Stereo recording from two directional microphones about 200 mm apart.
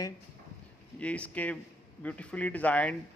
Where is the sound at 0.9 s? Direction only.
5° left (ahead or behind).